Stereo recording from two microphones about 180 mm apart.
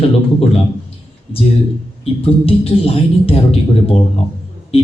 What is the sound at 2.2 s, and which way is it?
A man's voice, 30° left (ahead or behind).